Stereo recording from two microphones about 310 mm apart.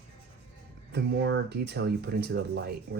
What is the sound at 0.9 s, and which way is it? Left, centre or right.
Speech, right.